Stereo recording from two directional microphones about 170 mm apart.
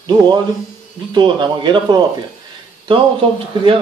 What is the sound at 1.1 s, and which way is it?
Speech, 25° right (ahead or behind).